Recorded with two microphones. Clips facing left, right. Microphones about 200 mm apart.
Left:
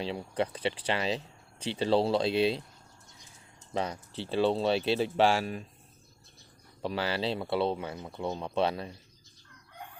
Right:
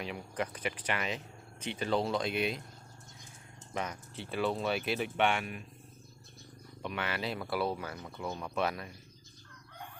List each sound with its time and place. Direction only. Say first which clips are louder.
0.0 s speech: left 5 dB; 30° left (ahead or behind)
3.8 s speech: left 5 dB; 30° left (ahead or behind)
6.8 s speech: left 5 dB; 30° left (ahead or behind)